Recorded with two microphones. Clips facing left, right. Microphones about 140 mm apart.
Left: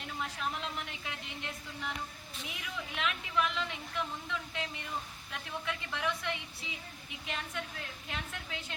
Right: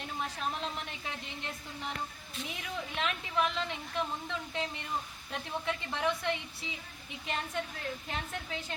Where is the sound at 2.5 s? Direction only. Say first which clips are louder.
Right 2 dB; 35° right (ahead or behind).